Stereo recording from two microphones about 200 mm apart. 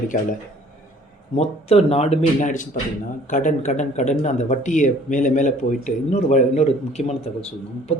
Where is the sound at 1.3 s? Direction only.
30° left (ahead or behind).